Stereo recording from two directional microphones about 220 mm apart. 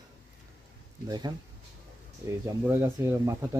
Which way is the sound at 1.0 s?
20° right (ahead or behind).